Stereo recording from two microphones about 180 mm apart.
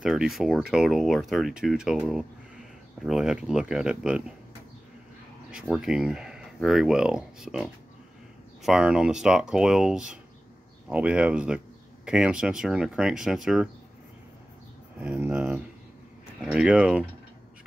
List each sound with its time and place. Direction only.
0.0 s speech: 5° right (ahead or behind)
5.5 s speech: 5° right (ahead or behind)
15.0 s speech: 10° right (ahead or behind)